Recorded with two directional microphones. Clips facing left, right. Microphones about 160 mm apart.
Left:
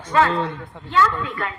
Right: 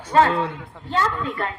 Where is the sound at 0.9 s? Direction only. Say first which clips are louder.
Left 3 dB; 35° right (ahead or behind).